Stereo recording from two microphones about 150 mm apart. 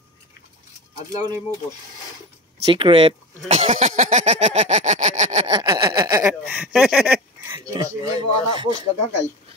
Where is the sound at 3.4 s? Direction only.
50° right (ahead or behind).